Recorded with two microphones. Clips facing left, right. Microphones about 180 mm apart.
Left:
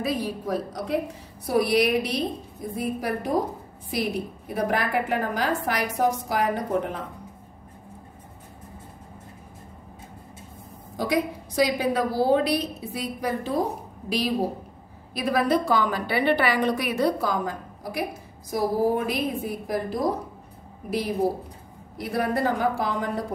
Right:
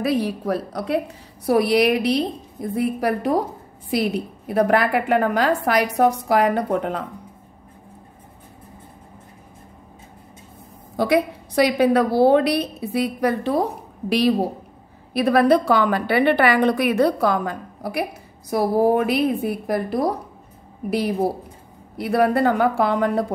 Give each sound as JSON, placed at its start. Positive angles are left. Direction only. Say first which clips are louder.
{"t": 0.0, "sound": "a woman's voice", "louder": "right 6 dB", "side_deg": -70}
{"t": 4.6, "sound": "a woman's voice", "louder": "right 7 dB", "side_deg": -70}
{"t": 11.0, "sound": "a woman's voice", "louder": "right 6 dB", "side_deg": -65}
{"t": 22.2, "sound": "a woman's voice", "louder": "right 6 dB", "side_deg": -65}